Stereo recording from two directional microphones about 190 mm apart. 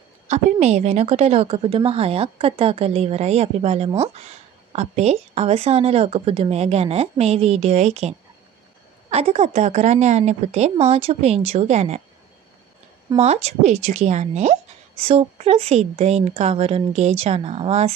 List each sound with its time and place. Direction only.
0.3 s a woman's voice: 35° right (ahead or behind)
13.2 s a woman's voice: 35° right (ahead or behind)